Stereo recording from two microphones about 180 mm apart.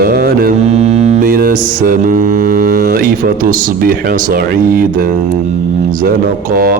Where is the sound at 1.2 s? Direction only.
55° right (ahead or behind).